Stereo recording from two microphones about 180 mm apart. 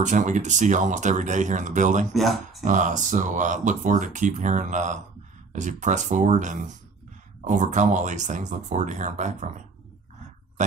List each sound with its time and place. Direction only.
0.0 s speech: 45° right (ahead or behind)
2.1 s speech: centre (ahead or behind)
2.6 s speech: 45° right (ahead or behind)